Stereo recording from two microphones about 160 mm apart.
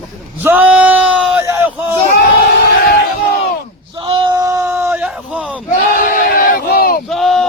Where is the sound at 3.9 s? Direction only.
30° right (ahead or behind); by 5.6 s 5° right (ahead or behind).